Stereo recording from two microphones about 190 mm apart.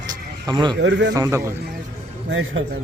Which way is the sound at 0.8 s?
70° right (ahead or behind).